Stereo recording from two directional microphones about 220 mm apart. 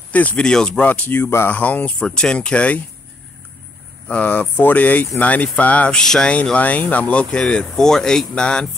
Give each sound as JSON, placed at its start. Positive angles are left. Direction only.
{"t": 0.1, "sound": "speech", "side_deg": 5}
{"t": 4.1, "sound": "speech", "side_deg": 5}